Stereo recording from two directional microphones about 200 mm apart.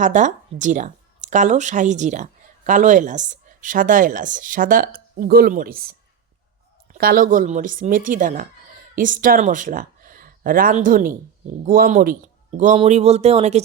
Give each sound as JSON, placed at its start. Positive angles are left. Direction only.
{"t": 0.0, "sound": "speech", "side_deg": -40}